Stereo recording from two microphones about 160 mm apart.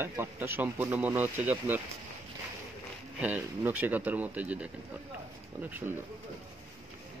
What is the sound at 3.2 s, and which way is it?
Speech, 10° right (ahead or behind).